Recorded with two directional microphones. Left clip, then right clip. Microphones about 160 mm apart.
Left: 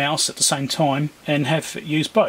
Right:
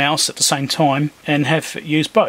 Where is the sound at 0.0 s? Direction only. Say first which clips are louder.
Right 4 dB; 20° right (ahead or behind).